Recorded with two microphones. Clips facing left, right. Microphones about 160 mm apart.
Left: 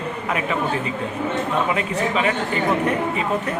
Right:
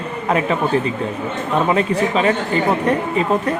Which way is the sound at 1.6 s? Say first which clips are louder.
Right 5 dB; 35° right (ahead or behind).